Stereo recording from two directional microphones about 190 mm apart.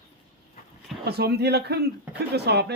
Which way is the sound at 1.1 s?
60° right (ahead or behind).